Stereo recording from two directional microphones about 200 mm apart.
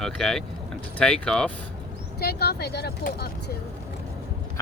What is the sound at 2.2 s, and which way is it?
Speech, 55° left (ahead or behind).